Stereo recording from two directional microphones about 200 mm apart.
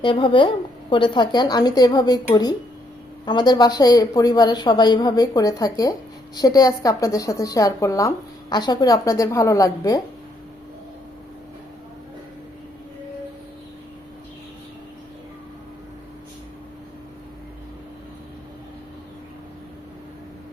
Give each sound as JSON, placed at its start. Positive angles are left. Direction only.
{"t": 0.0, "sound": "a woman's voice", "side_deg": 25}